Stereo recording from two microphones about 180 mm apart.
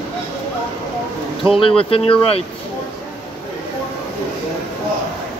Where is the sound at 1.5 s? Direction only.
30° left (ahead or behind).